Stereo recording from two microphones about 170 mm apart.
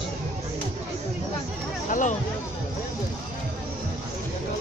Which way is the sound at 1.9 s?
50° left (ahead or behind).